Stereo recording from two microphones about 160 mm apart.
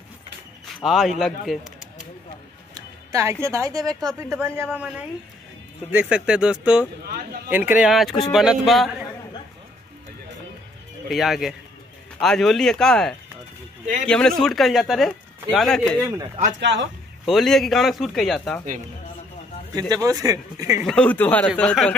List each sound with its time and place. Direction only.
0.8 s speech: centre (ahead or behind)
2.7 s speech: 20° right (ahead or behind)
4.7 s speech: 5° right (ahead or behind)
11.1 s speech: centre (ahead or behind)
17.3 s speech: centre (ahead or behind)
19.7 s speech: 25° right (ahead or behind)
20.8 s a man's voice: 5° left (ahead or behind)